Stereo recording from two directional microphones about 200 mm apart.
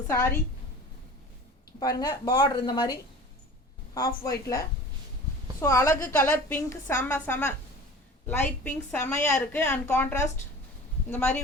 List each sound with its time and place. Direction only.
0.1 s a woman's voice: 15° left (ahead or behind)
1.8 s speech: 20° left (ahead or behind)
3.9 s a woman's voice: 15° left (ahead or behind)